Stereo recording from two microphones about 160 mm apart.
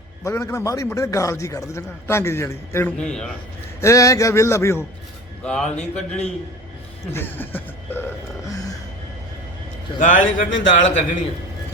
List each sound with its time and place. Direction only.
0.3 s a man's voice: 15° left (ahead or behind)
3.0 s a man's voice: 5° left (ahead or behind)
3.8 s a man's voice: 20° left (ahead or behind)
5.4 s speech: 5° left (ahead or behind)
7.1 s a sound: 15° left (ahead or behind)
10.0 s a man's voice: 55° left (ahead or behind)